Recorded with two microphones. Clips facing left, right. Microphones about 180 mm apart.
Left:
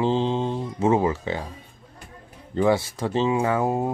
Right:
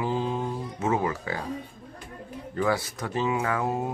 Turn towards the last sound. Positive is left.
turn(degrees=30)  # may be behind; listen again after turning